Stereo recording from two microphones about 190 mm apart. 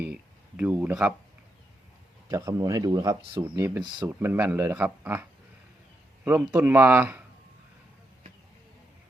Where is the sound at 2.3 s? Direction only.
15° right (ahead or behind).